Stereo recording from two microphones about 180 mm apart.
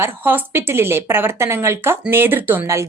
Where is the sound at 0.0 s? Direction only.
10° right (ahead or behind).